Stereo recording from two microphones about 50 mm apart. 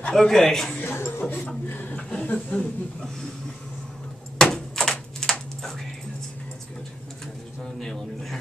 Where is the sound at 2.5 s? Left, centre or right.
Left.